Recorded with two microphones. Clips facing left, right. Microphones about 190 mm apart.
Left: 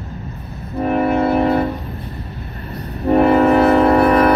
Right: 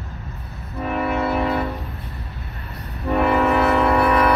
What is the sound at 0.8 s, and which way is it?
Music, 40° left (ahead or behind).